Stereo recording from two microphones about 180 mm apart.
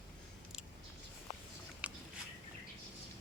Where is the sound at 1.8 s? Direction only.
5° right (ahead or behind).